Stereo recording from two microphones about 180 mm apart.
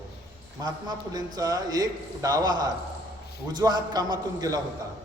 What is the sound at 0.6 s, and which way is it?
A man's voice, 20° right (ahead or behind).